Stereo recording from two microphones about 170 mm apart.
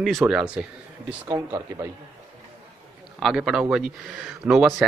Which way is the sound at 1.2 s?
25° right (ahead or behind).